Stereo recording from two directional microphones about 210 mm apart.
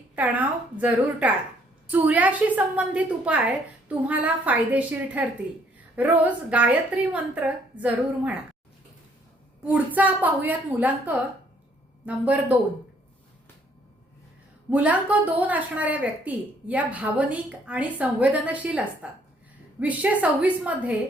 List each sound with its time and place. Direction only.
0.2 s a woman's voice: 5° right (ahead or behind)
9.6 s a woman's voice: 10° right (ahead or behind)
14.7 s a woman's voice: 5° right (ahead or behind)
20.2 s a woman's voice: 5° right (ahead or behind)